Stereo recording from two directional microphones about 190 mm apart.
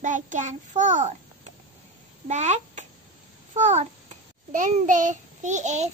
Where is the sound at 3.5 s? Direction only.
35° right (ahead or behind).